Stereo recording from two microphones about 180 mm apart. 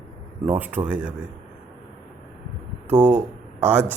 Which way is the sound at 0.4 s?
10° right (ahead or behind).